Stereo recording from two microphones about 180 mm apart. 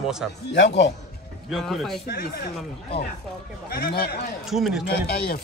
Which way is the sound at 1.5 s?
Centre (ahead or behind).